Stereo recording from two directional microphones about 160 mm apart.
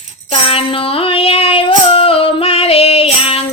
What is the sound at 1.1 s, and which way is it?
Female singing, 35° left (ahead or behind).